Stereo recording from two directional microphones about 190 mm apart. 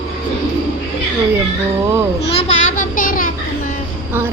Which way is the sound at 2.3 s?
30° left (ahead or behind).